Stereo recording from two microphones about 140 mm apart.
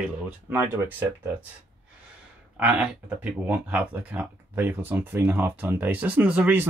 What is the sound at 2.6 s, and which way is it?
Speech, 10° right (ahead or behind).